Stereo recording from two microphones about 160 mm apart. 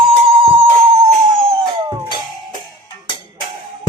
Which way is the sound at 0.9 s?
15° right (ahead or behind).